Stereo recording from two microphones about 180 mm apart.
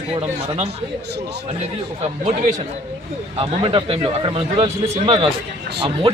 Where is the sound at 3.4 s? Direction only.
30° right (ahead or behind).